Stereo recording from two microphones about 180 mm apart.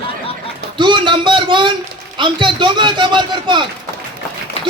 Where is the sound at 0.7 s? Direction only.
25° right (ahead or behind).